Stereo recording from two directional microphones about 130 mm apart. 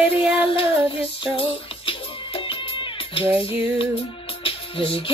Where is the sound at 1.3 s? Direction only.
45° left (ahead or behind).